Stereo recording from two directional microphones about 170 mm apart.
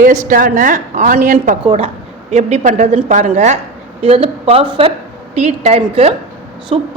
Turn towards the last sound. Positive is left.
turn(degrees=-35)  # may be behind; listen again after turning